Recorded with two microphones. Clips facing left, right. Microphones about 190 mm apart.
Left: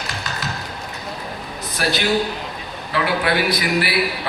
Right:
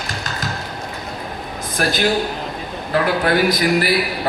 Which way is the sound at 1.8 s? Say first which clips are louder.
Right 2 dB; 45° right (ahead or behind).